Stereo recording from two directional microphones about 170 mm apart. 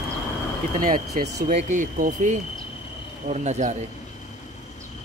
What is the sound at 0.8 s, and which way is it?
Speech, 55° right (ahead or behind).